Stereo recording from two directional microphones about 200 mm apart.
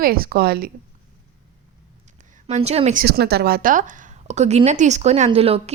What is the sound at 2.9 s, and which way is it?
A woman's voice, 50° right (ahead or behind).